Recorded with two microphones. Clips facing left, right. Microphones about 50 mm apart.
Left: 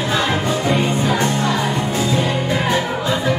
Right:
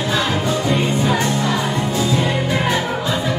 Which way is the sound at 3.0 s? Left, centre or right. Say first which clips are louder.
Left 2 dB; left.